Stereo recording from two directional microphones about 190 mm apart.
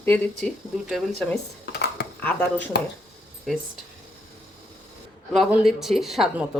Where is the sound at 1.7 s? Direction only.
60° left (ahead or behind).